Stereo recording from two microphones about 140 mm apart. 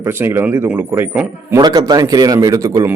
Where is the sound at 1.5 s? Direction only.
30° right (ahead or behind).